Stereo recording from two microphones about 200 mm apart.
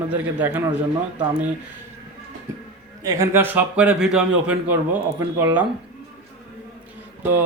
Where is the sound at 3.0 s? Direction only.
15° right (ahead or behind).